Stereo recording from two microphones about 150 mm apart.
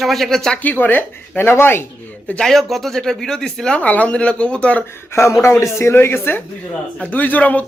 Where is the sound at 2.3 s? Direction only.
5° left (ahead or behind).